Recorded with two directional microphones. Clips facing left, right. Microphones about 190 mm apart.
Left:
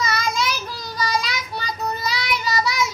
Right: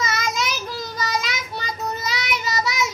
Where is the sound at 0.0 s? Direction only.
20° right (ahead or behind).